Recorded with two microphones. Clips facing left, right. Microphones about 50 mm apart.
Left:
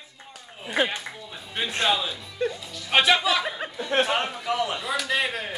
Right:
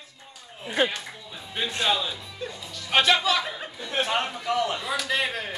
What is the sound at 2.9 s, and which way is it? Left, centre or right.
Speech, centre.